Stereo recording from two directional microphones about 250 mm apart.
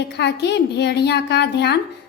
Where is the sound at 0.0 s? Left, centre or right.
Left.